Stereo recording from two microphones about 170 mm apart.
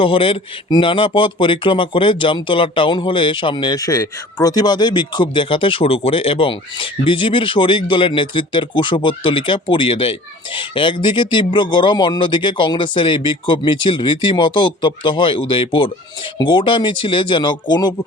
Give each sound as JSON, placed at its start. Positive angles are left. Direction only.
{"t": 0.0, "sound": "speech", "side_deg": 30}